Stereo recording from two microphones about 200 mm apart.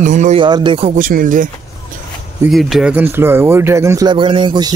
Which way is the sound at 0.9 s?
45° right (ahead or behind).